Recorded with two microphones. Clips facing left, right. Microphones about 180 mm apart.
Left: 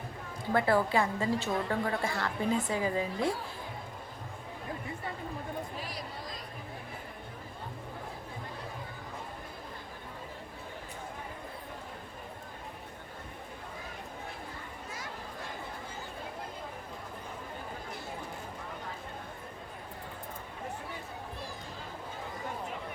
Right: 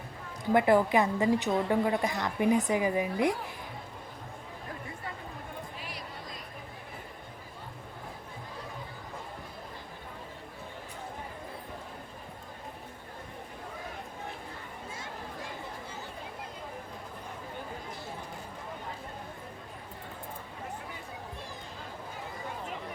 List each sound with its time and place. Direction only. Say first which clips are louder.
0.5 s a woman's voice: right 4 dB; 15° right (ahead or behind)